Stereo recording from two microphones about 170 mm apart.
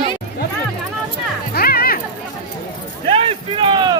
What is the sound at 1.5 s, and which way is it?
Music, 60° left (ahead or behind).